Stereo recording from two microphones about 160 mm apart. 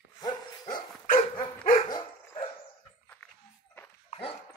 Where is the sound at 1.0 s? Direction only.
55° left (ahead or behind).